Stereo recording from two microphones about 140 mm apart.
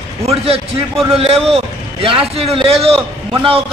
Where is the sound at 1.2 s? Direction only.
45° right (ahead or behind).